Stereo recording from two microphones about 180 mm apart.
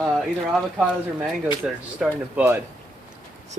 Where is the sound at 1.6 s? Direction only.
5° right (ahead or behind).